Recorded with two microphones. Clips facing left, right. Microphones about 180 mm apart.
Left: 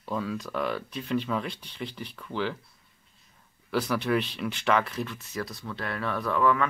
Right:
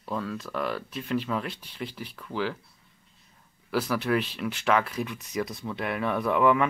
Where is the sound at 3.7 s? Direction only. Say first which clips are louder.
Even; 5° right (ahead or behind).